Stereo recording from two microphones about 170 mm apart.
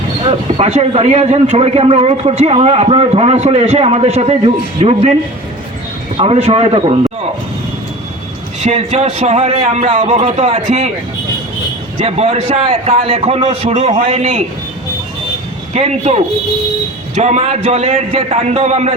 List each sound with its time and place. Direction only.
0.3 s a man's voice: 35° right (ahead or behind)
6.1 s a man's voice: 35° right (ahead or behind)
8.6 s a man's voice: 40° right (ahead or behind)
11.9 s a man's voice: 40° right (ahead or behind)
15.7 s a man's voice: 40° right (ahead or behind)